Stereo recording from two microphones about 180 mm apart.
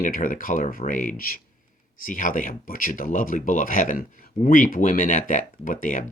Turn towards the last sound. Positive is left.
turn(degrees=50)  # may be behind; listen again after turning